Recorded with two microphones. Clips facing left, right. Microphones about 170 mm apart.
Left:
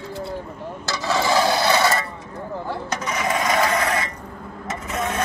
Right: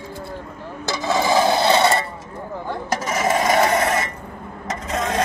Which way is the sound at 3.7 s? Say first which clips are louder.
Right 3 dB; 30° right (ahead or behind).